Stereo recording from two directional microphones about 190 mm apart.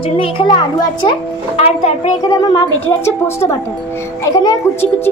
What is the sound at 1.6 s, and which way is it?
Speech, 35° left (ahead or behind).